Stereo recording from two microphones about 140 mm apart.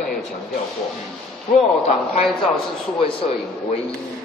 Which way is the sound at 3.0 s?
40° left (ahead or behind).